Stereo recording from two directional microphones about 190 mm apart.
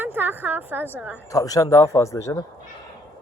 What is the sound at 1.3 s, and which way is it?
Speech, 20° left (ahead or behind).